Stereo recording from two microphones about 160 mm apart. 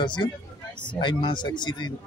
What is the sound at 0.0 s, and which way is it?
A man's voice, 30° left (ahead or behind).